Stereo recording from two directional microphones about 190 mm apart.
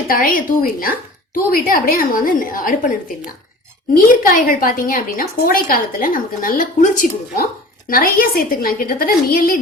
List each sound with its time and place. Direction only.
0.1 s a woman's voice: 45° left (ahead or behind)
3.9 s a woman's voice: 45° left (ahead or behind)